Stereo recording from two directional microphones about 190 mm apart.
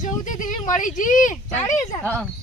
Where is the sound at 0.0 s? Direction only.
40° left (ahead or behind).